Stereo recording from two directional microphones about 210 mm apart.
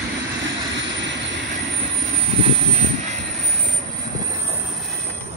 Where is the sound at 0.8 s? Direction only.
60° right (ahead or behind).